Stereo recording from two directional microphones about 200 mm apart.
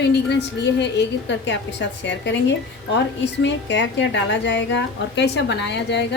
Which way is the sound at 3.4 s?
65° left (ahead or behind).